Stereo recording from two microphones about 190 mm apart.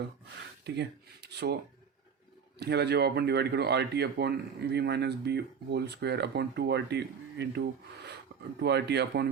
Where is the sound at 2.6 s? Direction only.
60° right (ahead or behind).